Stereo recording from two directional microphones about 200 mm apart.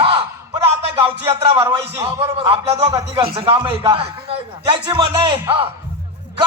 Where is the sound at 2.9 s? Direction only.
20° right (ahead or behind).